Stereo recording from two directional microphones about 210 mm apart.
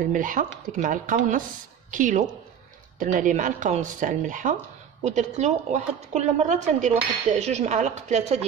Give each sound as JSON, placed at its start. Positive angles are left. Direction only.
{"t": 0.0, "sound": "speech", "side_deg": -40}